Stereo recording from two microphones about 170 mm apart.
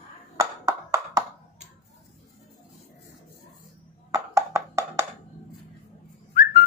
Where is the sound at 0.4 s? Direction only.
20° right (ahead or behind).